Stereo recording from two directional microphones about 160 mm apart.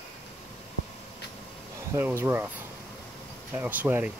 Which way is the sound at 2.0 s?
15° right (ahead or behind).